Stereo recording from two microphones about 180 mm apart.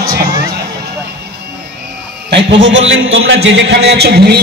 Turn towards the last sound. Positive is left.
turn(degrees=-65)  # may be behind; listen again after turning